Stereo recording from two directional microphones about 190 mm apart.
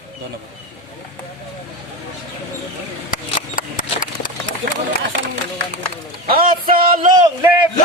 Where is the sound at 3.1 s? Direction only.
45° left (ahead or behind).